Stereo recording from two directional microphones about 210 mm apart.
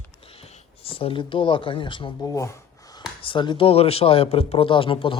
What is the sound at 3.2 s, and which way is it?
Speech, 25° left (ahead or behind).